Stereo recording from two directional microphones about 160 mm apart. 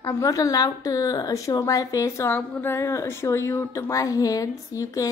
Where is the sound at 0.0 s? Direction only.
20° left (ahead or behind).